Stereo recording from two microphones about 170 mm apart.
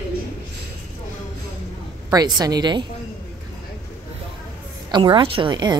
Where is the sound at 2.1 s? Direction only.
25° right (ahead or behind).